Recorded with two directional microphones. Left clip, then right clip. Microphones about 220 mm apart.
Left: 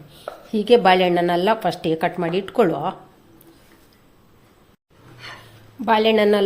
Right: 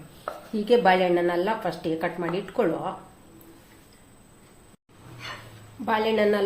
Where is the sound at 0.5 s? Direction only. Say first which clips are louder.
Left 5 dB; 40° left (ahead or behind).